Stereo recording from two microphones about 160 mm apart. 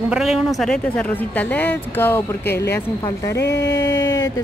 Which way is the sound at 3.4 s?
90° left.